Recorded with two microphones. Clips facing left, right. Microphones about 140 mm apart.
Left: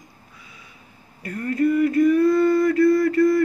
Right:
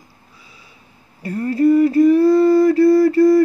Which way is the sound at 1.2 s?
30° right (ahead or behind).